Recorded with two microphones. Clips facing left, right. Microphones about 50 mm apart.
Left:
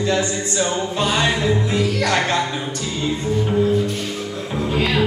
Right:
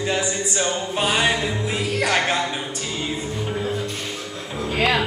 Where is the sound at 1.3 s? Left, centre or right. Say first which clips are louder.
Left 5 dB; centre.